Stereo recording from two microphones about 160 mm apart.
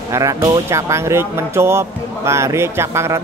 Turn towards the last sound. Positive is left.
turn(degrees=-15)  # may be behind; listen again after turning